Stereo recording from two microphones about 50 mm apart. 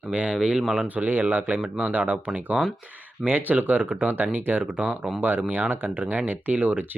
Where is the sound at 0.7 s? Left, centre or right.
Right.